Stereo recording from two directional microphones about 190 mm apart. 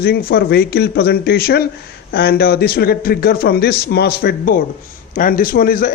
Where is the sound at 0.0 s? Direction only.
55° left (ahead or behind).